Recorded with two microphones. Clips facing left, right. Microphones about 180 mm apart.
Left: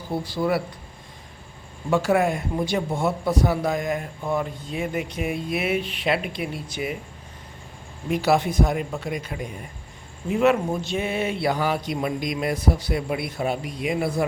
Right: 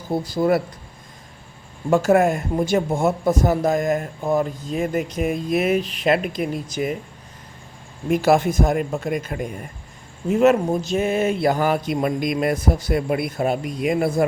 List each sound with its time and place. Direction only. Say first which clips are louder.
0.1 s speech: right 5 dB; 45° right (ahead or behind)
1.9 s speech: right 4 dB; 45° right (ahead or behind)
8.1 s speech: right 4 dB; 45° right (ahead or behind)